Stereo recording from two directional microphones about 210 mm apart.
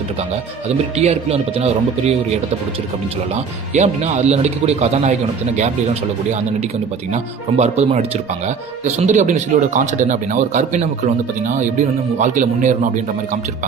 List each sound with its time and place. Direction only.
0.7 s speech: 30° right (ahead or behind)
3.3 s speech: 35° right (ahead or behind)